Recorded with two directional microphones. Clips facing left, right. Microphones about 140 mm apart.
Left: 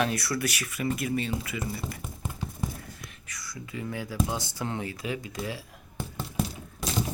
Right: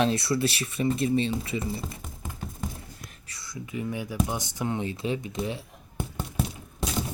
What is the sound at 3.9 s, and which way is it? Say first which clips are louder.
Speech: even; 15° right (ahead or behind).